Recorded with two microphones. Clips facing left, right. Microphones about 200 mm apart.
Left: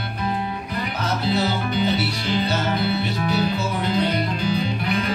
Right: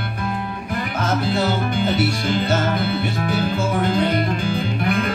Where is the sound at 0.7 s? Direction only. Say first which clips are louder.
Right 6 dB; 50° right (ahead or behind).